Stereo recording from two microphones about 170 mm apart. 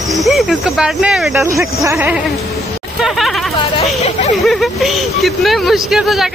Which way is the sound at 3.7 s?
40° left (ahead or behind).